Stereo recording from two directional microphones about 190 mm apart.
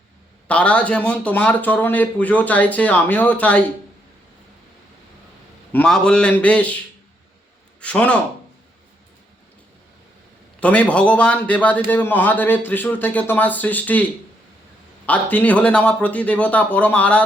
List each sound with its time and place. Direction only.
0.4 s speech: 5° left (ahead or behind)
5.7 s a man's voice: 5° left (ahead or behind)
7.8 s a man's voice: 5° left (ahead or behind)
10.6 s speech: 5° left (ahead or behind)
15.0 s speech: 10° left (ahead or behind)